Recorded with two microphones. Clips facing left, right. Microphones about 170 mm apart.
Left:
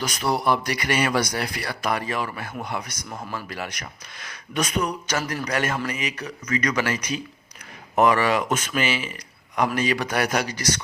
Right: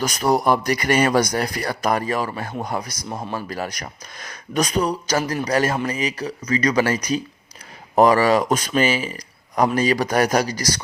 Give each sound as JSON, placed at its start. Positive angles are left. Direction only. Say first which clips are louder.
{"t": 0.0, "sound": "a man's voice", "louder": "right 5 dB", "side_deg": -40}